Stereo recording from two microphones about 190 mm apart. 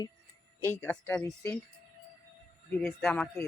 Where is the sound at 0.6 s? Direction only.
10° left (ahead or behind).